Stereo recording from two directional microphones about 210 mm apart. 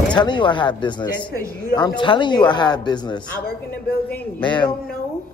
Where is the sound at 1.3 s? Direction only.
50° left (ahead or behind).